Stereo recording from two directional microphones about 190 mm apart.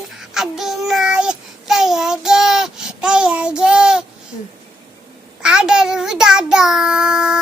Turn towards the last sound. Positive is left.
turn(degrees=-5)  # may be behind; listen again after turning